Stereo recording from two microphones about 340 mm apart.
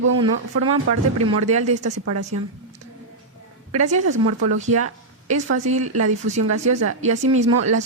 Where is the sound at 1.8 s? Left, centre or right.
Right.